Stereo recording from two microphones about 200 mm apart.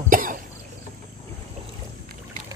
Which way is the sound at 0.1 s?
45° right (ahead or behind).